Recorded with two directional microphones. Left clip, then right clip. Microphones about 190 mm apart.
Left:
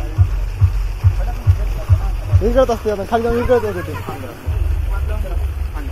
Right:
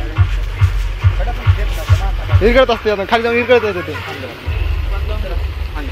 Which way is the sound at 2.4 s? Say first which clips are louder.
Right 4 dB; 30° right (ahead or behind).